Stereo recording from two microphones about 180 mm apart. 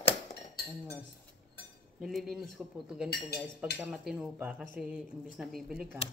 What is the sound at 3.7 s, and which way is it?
A woman's voice, centre (ahead or behind).